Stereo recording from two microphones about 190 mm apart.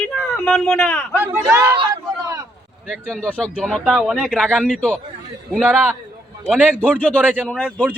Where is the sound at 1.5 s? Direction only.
15° right (ahead or behind).